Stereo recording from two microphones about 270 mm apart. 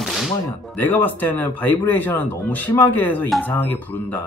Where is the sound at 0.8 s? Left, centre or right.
Centre.